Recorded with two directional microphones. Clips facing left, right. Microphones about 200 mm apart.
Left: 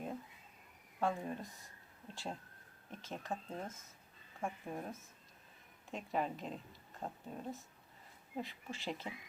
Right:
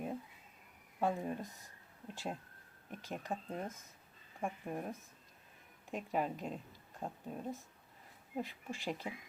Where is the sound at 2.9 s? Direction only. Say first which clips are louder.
Right 2 dB; 15° right (ahead or behind).